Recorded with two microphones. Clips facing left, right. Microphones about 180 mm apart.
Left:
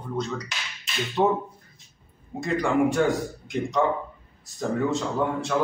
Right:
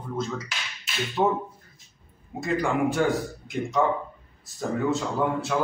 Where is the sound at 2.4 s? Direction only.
Centre (ahead or behind).